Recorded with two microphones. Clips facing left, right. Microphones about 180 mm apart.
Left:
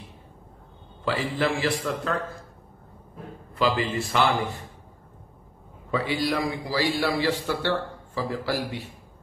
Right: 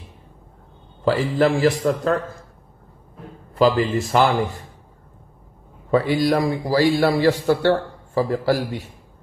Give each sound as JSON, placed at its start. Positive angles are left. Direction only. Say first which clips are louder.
{"t": 1.0, "sound": "a man's voice", "louder": "right 7 dB", "side_deg": -45}
{"t": 3.5, "sound": "a man's voice", "louder": "right 7 dB", "side_deg": -45}
{"t": 5.9, "sound": "a man's voice", "louder": "right 8 dB", "side_deg": -45}